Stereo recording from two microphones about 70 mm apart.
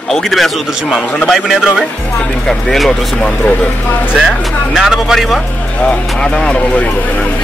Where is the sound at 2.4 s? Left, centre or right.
Centre.